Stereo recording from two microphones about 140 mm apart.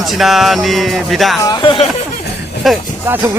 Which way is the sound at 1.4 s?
30° left (ahead or behind).